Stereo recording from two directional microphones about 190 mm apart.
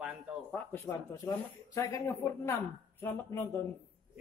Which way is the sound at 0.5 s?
10° left (ahead or behind).